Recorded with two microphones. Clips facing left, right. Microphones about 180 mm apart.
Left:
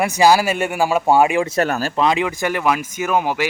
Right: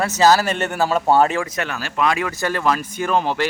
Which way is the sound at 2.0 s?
20° left (ahead or behind).